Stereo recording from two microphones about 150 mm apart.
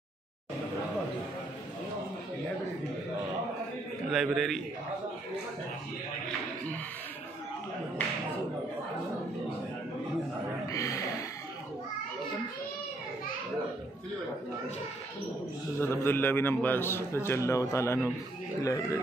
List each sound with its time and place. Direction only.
4.1 s a man's voice: centre (ahead or behind)
10.7 s a sound: 20° left (ahead or behind)
15.8 s a man's voice: 15° left (ahead or behind)